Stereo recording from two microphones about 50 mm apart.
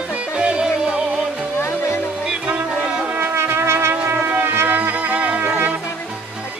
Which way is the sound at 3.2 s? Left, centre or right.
Right.